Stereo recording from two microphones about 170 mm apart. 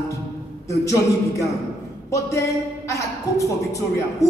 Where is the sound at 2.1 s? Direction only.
20° left (ahead or behind).